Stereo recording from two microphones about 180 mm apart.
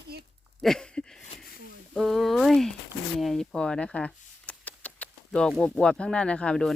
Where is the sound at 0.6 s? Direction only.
5° left (ahead or behind).